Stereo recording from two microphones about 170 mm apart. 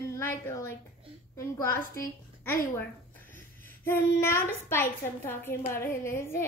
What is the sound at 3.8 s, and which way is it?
A child's voice, 15° left (ahead or behind).